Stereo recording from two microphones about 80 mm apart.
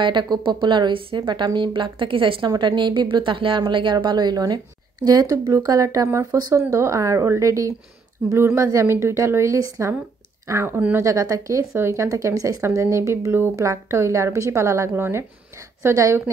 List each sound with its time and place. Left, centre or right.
0.0 s a woman's voice: right
2.5 s a woman's voice: right
5.0 s speech: right